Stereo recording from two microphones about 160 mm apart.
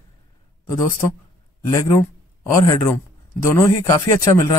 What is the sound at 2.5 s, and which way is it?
Speech, 20° left (ahead or behind).